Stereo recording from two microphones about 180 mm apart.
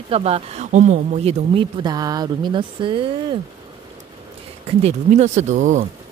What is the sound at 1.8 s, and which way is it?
Speech, 20° right (ahead or behind).